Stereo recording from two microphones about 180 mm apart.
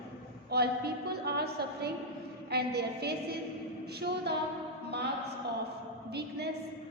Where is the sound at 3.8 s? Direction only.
65° right (ahead or behind).